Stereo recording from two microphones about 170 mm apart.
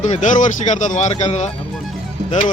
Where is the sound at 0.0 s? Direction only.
45° left (ahead or behind).